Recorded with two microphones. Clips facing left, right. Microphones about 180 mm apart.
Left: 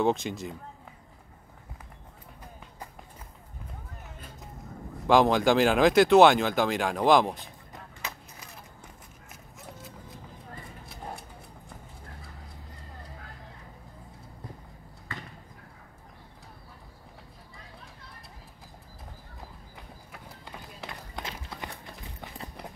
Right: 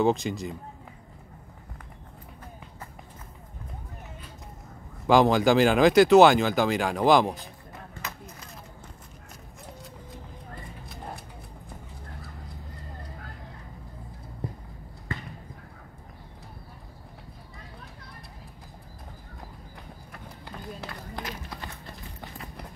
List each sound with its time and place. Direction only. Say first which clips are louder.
0.0 s speech: right 2 dB; centre (ahead or behind)
5.0 s speech: right 2 dB; centre (ahead or behind)
9.8 s a sound: right 1 dB; centre (ahead or behind)
21.2 s music: right 1 dB; 25° left (ahead or behind)